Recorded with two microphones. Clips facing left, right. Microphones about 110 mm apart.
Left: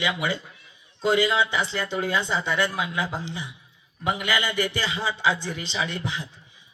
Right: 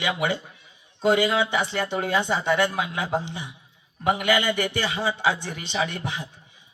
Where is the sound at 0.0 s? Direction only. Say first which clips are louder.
Right 1 dB; 55° right (ahead or behind).